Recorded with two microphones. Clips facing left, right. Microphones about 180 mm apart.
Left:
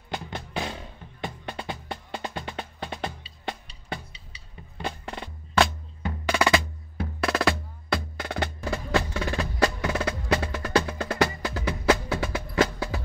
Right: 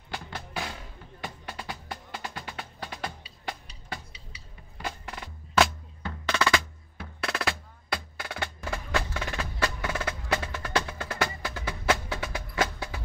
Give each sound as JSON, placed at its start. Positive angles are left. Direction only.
{"t": 0.1, "sound": "music", "side_deg": 20}
{"t": 6.0, "sound": "percussion", "side_deg": 15}
{"t": 7.0, "sound": "music", "side_deg": 40}
{"t": 8.2, "sound": "percussion", "side_deg": 40}
{"t": 9.8, "sound": "music", "side_deg": 35}